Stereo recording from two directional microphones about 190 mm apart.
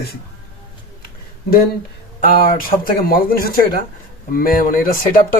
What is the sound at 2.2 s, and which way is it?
Speech, 50° left (ahead or behind).